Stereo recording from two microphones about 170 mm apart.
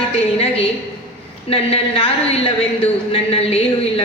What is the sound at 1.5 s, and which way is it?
Speech, 35° left (ahead or behind).